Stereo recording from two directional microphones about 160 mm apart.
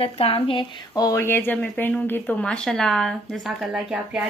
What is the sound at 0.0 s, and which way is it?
Speech, 35° left (ahead or behind).